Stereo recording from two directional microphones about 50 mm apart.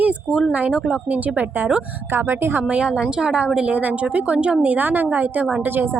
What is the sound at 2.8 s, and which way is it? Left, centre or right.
Speech, centre.